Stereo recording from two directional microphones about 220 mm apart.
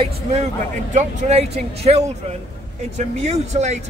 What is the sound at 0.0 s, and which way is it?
Speech, 30° right (ahead or behind).